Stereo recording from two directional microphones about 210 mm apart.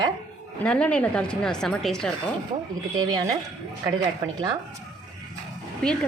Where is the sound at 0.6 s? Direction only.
5° left (ahead or behind).